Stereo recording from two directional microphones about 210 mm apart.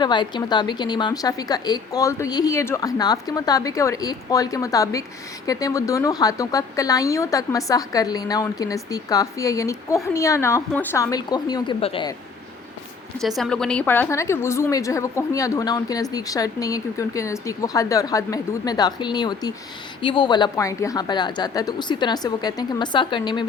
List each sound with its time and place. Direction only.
0.0 s speech: 20° left (ahead or behind)
13.2 s a woman's voice: centre (ahead or behind); by 23.5 s 20° left (ahead or behind)